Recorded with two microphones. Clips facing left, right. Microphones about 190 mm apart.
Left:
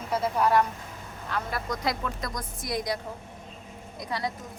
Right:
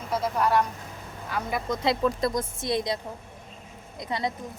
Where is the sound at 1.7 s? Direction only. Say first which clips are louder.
Right 7 dB; 25° right (ahead or behind).